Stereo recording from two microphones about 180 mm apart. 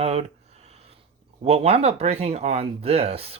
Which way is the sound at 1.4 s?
35° right (ahead or behind).